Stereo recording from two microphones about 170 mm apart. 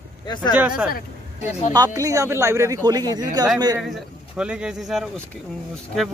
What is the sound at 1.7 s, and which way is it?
Speech, 20° right (ahead or behind).